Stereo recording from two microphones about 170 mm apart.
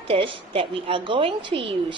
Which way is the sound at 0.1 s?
30° right (ahead or behind).